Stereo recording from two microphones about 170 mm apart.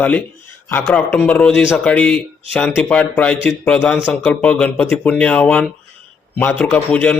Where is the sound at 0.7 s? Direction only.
10° left (ahead or behind).